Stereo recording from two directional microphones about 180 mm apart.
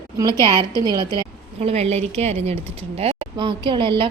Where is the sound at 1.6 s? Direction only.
35° right (ahead or behind).